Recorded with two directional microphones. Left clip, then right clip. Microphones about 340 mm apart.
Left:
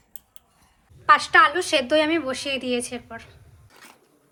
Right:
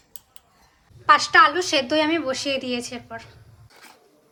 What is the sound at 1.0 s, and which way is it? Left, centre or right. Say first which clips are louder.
A woman's voice: right 1 dB; centre.